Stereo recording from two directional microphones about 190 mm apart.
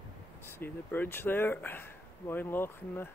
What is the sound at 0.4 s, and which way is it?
Speech, 10° left (ahead or behind).